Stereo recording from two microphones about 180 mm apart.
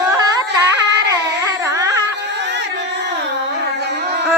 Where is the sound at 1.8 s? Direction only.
20° right (ahead or behind).